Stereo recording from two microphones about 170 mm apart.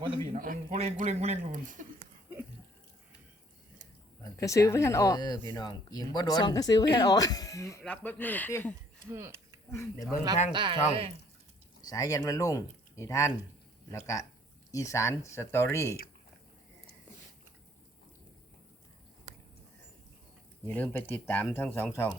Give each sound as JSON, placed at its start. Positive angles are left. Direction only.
{"t": 0.3, "sound": "a man's voice", "side_deg": -55}
{"t": 0.7, "sound": "speech", "side_deg": -40}
{"t": 4.2, "sound": "speech", "side_deg": 20}
{"t": 9.0, "sound": "speech", "side_deg": -15}
{"t": 9.7, "sound": "speech", "side_deg": 15}
{"t": 10.5, "sound": "speech", "side_deg": -30}
{"t": 11.8, "sound": "speech", "side_deg": 20}
{"t": 20.7, "sound": "speech", "side_deg": 10}